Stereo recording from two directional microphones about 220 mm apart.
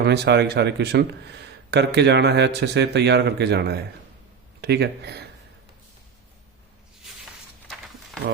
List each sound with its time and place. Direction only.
0.0 s a man's voice: 50° right (ahead or behind)